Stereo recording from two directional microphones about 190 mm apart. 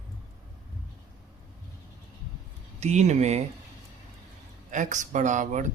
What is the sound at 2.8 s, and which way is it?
Speech, 35° right (ahead or behind).